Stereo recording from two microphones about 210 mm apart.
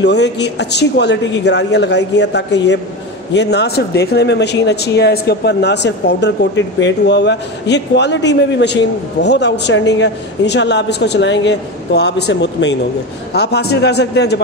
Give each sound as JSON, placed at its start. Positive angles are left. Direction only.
{"t": 0.0, "sound": "a man's voice", "side_deg": 55}